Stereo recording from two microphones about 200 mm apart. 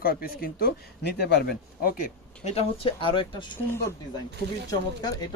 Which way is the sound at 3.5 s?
15° left (ahead or behind).